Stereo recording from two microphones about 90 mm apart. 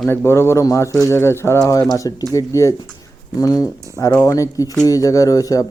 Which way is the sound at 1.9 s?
40° left (ahead or behind).